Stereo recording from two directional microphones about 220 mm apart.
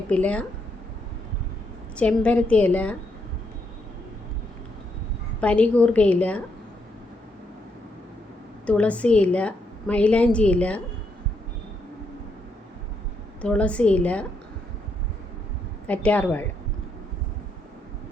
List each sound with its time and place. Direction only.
0.1 s a woman's voice: 5° left (ahead or behind)
2.0 s a woman's voice: 5° left (ahead or behind)
5.4 s a woman's voice: 5° left (ahead or behind)
8.6 s a woman's voice: 5° left (ahead or behind)
13.4 s a woman's voice: 5° left (ahead or behind)
15.9 s a woman's voice: 5° left (ahead or behind)